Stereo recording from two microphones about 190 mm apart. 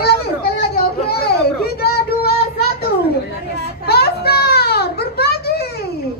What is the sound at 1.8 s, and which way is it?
Child singing, 55° left (ahead or behind).